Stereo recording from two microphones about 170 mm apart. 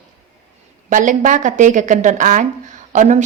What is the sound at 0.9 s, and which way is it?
A woman's voice, 50° right (ahead or behind).